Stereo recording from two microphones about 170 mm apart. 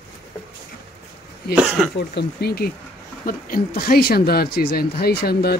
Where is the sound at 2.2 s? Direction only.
70° left (ahead or behind).